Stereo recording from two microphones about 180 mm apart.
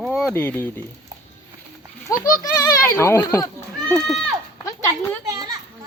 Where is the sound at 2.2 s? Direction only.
20° left (ahead or behind).